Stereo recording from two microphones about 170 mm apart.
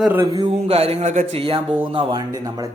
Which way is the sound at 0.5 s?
35° right (ahead or behind).